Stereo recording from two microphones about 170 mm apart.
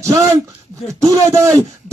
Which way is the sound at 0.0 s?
15° right (ahead or behind).